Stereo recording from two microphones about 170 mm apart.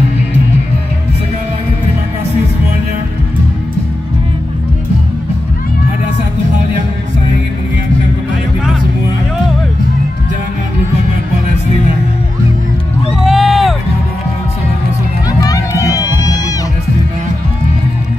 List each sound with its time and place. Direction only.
13.2 s crowd: centre (ahead or behind)
15.4 s music: 20° left (ahead or behind)